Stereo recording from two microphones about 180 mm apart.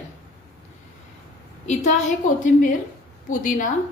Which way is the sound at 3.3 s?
45° left (ahead or behind).